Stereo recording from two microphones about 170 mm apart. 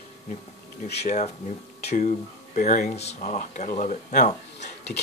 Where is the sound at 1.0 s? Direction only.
40° left (ahead or behind).